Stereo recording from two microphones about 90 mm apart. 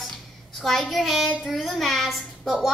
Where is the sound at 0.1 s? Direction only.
5° left (ahead or behind).